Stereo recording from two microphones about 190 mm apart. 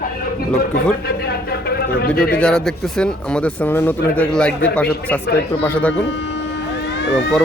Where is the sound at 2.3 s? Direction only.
5° left (ahead or behind).